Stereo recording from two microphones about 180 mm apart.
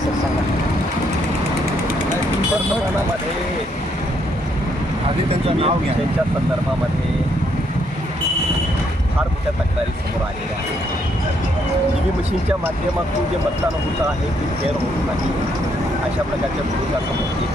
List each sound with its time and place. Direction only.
5.3 s speech: 35° right (ahead or behind)